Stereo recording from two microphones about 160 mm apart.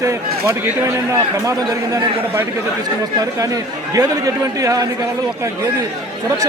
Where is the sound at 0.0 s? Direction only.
15° right (ahead or behind).